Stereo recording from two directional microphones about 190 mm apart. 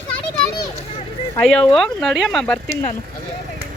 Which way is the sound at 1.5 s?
5° left (ahead or behind).